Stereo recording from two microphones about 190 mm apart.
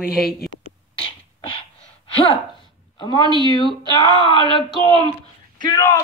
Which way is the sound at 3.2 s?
20° right (ahead or behind).